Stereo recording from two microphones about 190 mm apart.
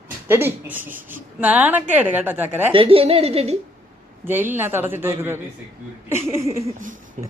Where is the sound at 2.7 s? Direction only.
30° right (ahead or behind).